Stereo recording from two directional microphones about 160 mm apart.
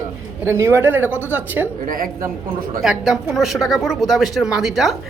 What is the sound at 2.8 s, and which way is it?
Speech, centre (ahead or behind).